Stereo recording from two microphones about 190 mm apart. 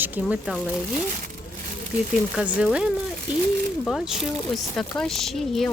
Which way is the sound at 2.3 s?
5° right (ahead or behind).